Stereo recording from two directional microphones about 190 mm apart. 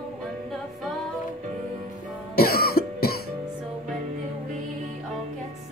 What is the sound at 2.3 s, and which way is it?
Cough, 55° left (ahead or behind).